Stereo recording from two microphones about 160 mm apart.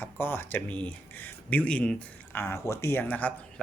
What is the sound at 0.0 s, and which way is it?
Speech, 15° left (ahead or behind).